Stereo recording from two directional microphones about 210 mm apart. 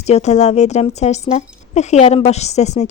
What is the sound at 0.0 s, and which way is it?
A woman's voice, 30° left (ahead or behind).